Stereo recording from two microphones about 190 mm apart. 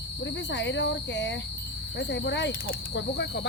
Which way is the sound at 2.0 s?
65° left (ahead or behind).